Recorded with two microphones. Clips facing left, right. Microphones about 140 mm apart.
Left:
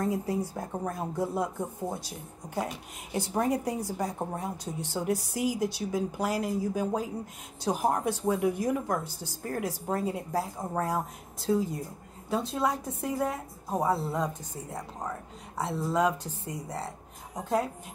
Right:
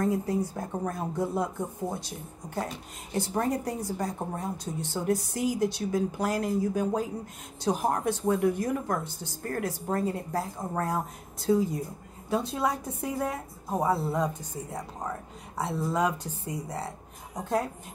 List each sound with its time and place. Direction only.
0.0 s a woman's voice: 10° left (ahead or behind)